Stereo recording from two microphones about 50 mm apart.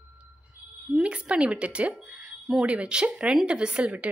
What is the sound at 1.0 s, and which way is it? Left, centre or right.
A woman's voice, right.